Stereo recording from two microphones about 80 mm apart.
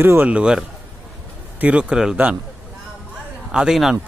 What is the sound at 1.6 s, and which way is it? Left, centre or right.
Speech, centre.